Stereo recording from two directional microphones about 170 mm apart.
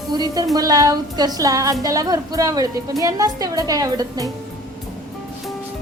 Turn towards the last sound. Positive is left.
turn(degrees=-20)  # may be behind; listen again after turning